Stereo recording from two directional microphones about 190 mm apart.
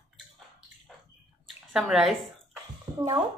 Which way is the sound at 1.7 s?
Centre (ahead or behind).